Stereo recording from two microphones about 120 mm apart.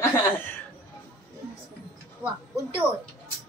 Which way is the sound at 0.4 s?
15° left (ahead or behind).